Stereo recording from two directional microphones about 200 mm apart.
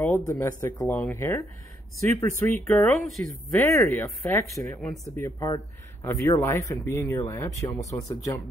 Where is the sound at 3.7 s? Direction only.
10° left (ahead or behind).